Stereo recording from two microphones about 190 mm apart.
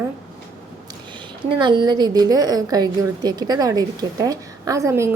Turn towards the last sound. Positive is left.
turn(degrees=-15)  # may be behind; listen again after turning